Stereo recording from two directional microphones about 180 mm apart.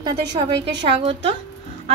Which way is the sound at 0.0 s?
30° right (ahead or behind).